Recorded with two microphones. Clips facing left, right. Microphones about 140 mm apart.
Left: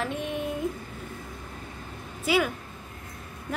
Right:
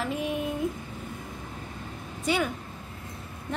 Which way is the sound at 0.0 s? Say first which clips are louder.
Right 1 dB; centre (ahead or behind).